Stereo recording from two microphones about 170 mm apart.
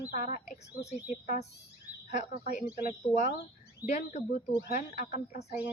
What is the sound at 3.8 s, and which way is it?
Speech, 5° right (ahead or behind).